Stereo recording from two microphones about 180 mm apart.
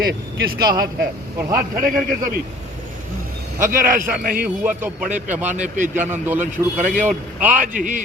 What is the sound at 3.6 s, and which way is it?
Speech, 50° right (ahead or behind).